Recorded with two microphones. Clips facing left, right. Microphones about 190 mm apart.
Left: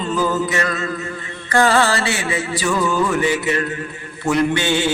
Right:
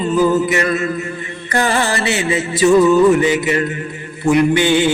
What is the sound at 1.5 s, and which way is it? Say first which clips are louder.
Music: left 2 dB; 20° right (ahead or behind).